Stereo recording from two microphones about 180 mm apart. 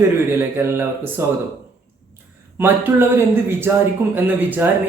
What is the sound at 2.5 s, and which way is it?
A man's voice, 10° right (ahead or behind).